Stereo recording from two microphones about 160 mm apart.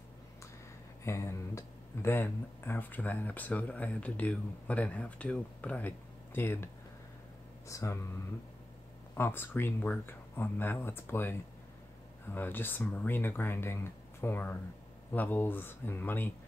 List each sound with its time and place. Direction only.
1.0 s speech: 15° left (ahead or behind)
9.1 s speech: 15° left (ahead or behind)